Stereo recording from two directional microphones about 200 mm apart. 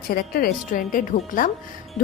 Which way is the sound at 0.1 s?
50° left (ahead or behind).